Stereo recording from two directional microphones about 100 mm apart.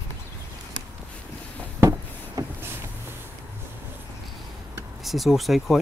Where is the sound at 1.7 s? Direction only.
30° right (ahead or behind).